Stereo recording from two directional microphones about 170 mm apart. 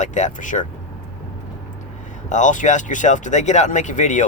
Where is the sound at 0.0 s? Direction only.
45° left (ahead or behind).